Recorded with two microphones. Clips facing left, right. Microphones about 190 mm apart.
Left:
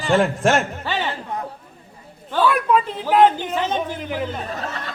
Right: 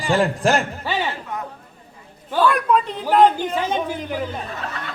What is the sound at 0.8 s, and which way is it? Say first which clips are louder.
Speech: right 1 dB; 10° right (ahead or behind).